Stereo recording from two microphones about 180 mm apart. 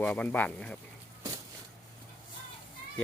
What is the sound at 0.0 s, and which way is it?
Speech, 10° left (ahead or behind).